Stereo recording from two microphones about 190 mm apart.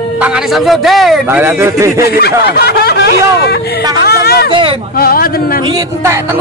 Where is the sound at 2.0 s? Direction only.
55° left (ahead or behind).